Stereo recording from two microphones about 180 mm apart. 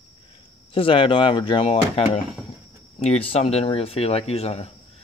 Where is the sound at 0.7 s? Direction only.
30° left (ahead or behind).